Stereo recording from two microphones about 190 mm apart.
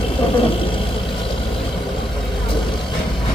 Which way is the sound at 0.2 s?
30° left (ahead or behind).